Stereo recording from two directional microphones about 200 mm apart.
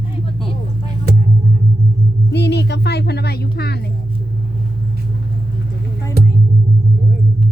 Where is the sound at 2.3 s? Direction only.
60° left (ahead or behind).